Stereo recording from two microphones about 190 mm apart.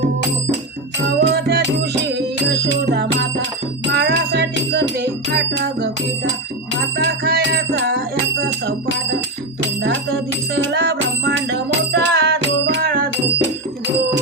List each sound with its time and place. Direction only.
1.2 s music: 65° right (ahead or behind)
10.6 s music: 70° right (ahead or behind); by 13.1 s 50° right (ahead or behind)